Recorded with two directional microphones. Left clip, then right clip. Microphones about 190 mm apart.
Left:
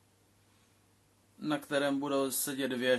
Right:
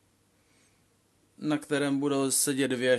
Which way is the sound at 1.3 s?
50° right (ahead or behind).